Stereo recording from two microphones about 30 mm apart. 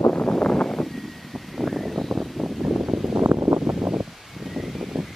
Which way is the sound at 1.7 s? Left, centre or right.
Centre.